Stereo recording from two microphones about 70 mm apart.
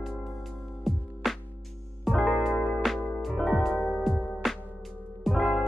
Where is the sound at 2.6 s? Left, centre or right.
Centre.